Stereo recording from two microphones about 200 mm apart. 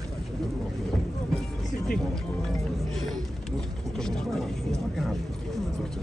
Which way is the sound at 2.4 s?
Centre (ahead or behind).